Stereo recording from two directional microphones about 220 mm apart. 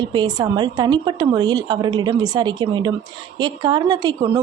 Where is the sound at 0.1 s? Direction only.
20° right (ahead or behind).